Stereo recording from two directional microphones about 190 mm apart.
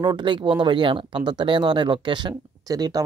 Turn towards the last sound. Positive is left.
turn(degrees=-20)  # may be behind; listen again after turning